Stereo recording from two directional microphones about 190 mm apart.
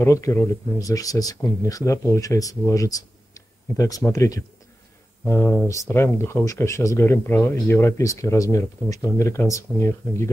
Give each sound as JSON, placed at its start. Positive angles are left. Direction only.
{"t": 0.0, "sound": "speech", "side_deg": 15}